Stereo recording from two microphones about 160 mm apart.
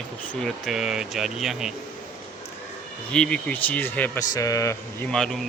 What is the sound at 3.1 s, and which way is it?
Speech, 5° left (ahead or behind).